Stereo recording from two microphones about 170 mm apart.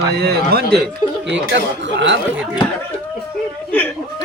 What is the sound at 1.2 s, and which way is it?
Speech, 90° right.